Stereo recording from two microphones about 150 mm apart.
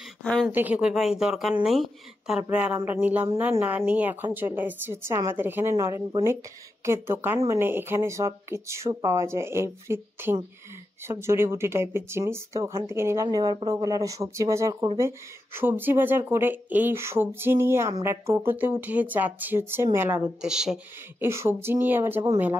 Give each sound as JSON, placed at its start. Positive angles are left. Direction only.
{"t": 0.2, "sound": "a sound", "side_deg": 5}
{"t": 0.5, "sound": "speech", "side_deg": -10}
{"t": 21.2, "sound": "speech", "side_deg": -15}